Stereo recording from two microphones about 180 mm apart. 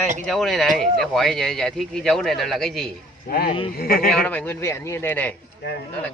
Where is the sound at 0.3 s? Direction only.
Centre (ahead or behind).